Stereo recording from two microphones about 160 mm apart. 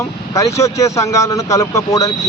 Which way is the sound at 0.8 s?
20° left (ahead or behind).